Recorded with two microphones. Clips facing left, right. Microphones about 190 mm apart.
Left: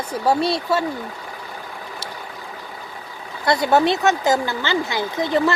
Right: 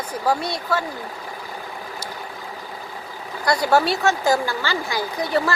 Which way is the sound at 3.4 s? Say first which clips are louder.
Left 2 dB; 20° left (ahead or behind).